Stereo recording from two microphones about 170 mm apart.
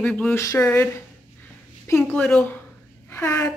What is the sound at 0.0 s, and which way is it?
Speech, 5° left (ahead or behind).